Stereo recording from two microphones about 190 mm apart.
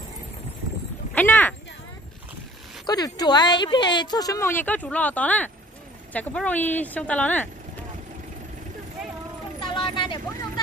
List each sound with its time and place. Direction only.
1.1 s a sound: 10° left (ahead or behind)
2.9 s a woman's voice: 20° left (ahead or behind)
9.7 s vehicle: 25° left (ahead or behind)